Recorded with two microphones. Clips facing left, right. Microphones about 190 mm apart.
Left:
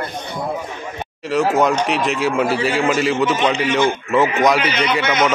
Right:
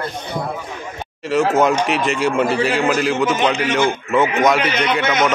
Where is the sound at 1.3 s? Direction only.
Centre (ahead or behind).